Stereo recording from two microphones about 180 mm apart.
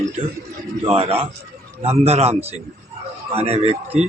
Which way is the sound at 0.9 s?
30° right (ahead or behind).